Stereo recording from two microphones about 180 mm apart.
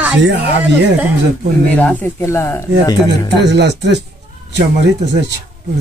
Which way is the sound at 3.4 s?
70° right (ahead or behind).